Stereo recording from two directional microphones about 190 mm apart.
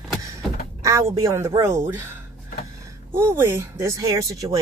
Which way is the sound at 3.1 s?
10° right (ahead or behind).